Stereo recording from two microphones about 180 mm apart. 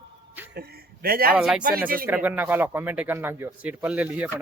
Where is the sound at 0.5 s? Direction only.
60° right (ahead or behind).